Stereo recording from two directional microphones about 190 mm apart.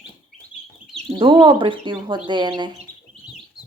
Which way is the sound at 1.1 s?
25° right (ahead or behind).